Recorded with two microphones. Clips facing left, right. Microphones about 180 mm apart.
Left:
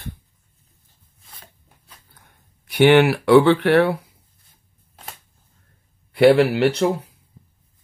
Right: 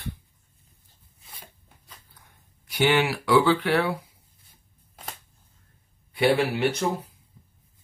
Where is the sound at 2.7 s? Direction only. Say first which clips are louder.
Left 9 dB; 65° left (ahead or behind).